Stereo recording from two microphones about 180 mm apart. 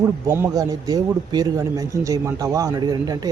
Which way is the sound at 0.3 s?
15° right (ahead or behind).